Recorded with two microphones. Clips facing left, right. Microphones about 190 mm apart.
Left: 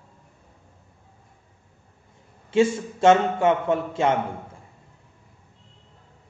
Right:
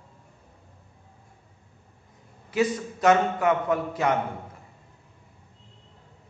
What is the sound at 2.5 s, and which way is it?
A man's voice, 25° left (ahead or behind).